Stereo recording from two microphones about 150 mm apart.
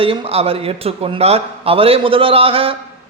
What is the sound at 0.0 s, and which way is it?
A man's voice, 40° right (ahead or behind).